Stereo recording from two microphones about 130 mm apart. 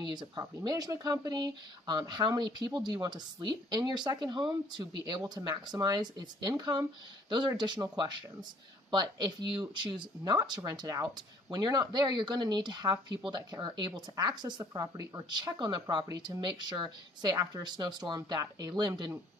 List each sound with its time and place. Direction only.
0.0 s speech: 35° right (ahead or behind)